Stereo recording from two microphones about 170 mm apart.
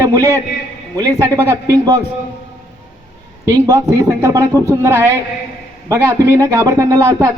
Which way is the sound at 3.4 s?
15° right (ahead or behind).